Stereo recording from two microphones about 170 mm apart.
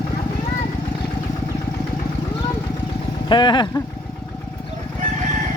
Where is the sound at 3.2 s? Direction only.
25° left (ahead or behind).